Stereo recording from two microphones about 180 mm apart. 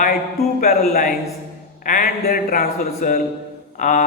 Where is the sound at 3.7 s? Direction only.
45° left (ahead or behind).